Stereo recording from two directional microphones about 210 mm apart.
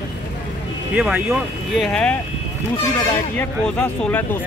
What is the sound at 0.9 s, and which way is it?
Speech, 5° right (ahead or behind).